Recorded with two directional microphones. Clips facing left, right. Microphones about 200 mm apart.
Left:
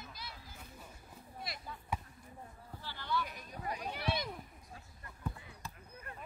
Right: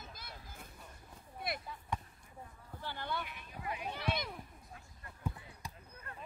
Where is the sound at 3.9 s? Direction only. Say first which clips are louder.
Even; 10° left (ahead or behind).